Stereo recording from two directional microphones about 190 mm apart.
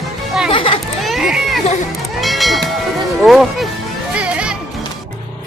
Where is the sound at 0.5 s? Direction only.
30° left (ahead or behind).